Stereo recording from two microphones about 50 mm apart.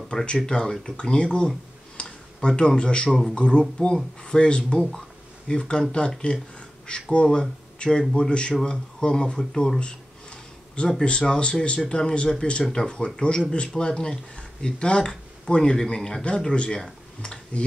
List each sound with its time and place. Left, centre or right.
0.1 s speech: centre
2.0 s a sound: centre
3.3 s speech: centre
11.1 s speech: centre